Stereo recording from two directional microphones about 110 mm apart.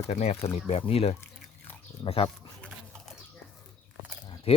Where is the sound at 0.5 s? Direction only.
65° left (ahead or behind).